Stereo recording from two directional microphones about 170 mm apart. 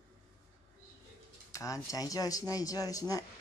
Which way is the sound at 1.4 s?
20° left (ahead or behind).